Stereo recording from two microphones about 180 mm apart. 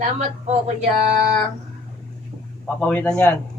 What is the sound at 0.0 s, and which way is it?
Speech, 40° right (ahead or behind).